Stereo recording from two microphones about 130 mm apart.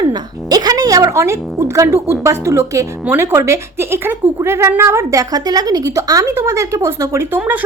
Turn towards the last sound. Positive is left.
turn(degrees=-10)  # may be behind; listen again after turning